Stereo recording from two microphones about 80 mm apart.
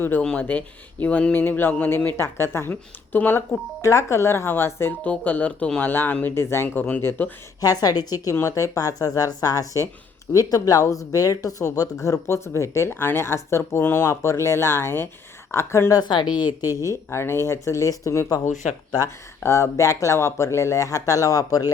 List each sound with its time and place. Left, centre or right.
0.2 s speech: centre
3.8 s speech: left
7.6 s a woman's voice: left
13.0 s speech: left
13.2 s speech: left
16.0 s a woman's voice: left
16.6 s speech: left
19.4 s speech: left